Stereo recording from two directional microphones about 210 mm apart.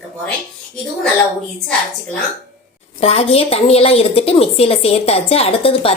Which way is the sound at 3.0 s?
30° left (ahead or behind).